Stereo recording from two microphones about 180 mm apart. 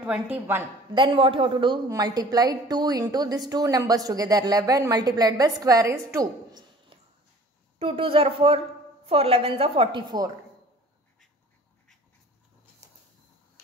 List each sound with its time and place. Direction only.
0.0 s speech: 10° right (ahead or behind)
0.9 s a woman's voice: 25° right (ahead or behind)
6.9 s a sound: 30° right (ahead or behind)
7.8 s a woman's voice: 30° right (ahead or behind)